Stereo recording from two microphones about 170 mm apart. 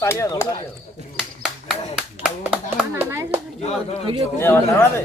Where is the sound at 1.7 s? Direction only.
5° right (ahead or behind).